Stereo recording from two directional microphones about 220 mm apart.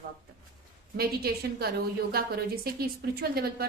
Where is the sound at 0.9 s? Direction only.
45° right (ahead or behind).